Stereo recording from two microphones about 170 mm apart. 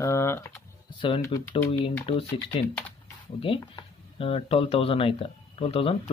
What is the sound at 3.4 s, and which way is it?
Speech, 30° left (ahead or behind).